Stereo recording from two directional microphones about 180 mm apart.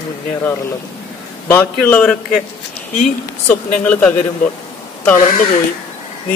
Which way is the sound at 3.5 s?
10° left (ahead or behind).